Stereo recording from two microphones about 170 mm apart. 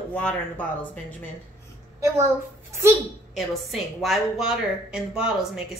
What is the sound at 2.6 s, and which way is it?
Speech, 15° right (ahead or behind).